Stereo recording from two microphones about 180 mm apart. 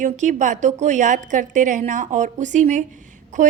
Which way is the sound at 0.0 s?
45° right (ahead or behind).